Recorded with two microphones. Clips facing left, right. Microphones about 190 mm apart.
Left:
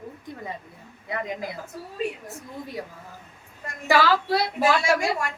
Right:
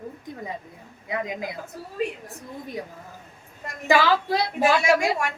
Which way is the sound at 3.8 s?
20° right (ahead or behind).